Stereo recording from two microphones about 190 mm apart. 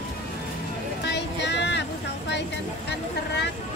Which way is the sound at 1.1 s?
65° left (ahead or behind).